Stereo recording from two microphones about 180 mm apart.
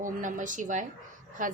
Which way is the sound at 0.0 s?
45° right (ahead or behind).